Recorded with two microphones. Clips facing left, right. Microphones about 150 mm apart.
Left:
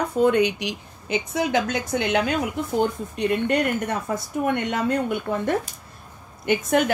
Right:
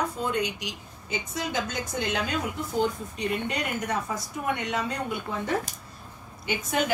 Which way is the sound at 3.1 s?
55° left (ahead or behind).